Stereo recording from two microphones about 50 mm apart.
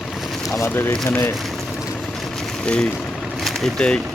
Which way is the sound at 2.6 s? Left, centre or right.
Centre.